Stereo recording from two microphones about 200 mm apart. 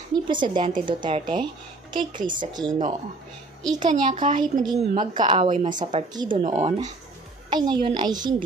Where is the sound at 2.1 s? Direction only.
40° right (ahead or behind).